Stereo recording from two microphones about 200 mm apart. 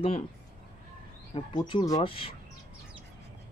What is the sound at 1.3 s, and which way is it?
Speech, 25° left (ahead or behind).